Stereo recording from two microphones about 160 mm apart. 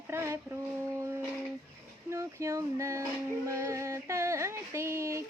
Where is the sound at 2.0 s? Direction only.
20° right (ahead or behind).